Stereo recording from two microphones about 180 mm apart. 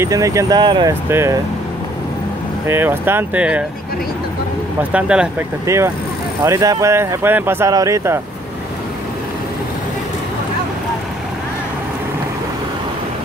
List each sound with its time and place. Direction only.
0.0 s speech: 20° right (ahead or behind)
2.6 s speech: 15° right (ahead or behind)
4.9 s speech: 5° right (ahead or behind)
6.4 s speech: 20° right (ahead or behind)